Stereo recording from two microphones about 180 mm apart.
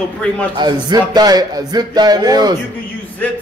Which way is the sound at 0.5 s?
25° right (ahead or behind).